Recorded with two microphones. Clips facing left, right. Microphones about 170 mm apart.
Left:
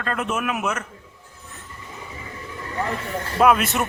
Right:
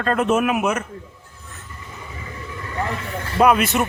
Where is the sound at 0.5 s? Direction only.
15° right (ahead or behind).